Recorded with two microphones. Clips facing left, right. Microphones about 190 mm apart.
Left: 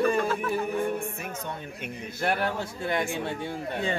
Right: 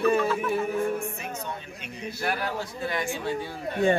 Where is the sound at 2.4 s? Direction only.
55° left (ahead or behind).